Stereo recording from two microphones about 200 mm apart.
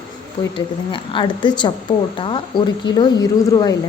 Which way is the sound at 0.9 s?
25° left (ahead or behind).